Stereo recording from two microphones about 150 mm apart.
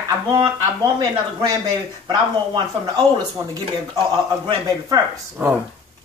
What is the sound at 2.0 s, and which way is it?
Speech, 30° right (ahead or behind).